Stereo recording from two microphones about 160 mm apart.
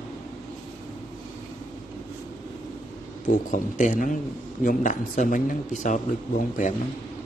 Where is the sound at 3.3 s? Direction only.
55° left (ahead or behind).